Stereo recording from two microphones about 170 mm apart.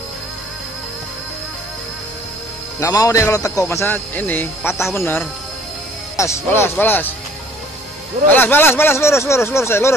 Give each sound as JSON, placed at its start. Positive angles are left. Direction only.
{"t": 2.8, "sound": "a man's voice", "side_deg": 20}
{"t": 8.3, "sound": "a man's voice", "side_deg": 10}